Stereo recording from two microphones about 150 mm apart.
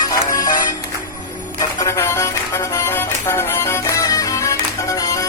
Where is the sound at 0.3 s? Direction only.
25° left (ahead or behind).